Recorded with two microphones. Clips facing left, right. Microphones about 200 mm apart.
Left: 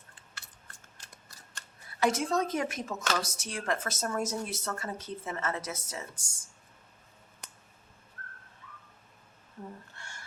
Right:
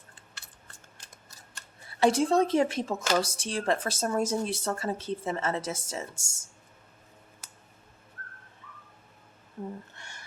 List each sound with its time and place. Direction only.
2.0 s speech: 30° right (ahead or behind)
9.9 s music: 20° right (ahead or behind)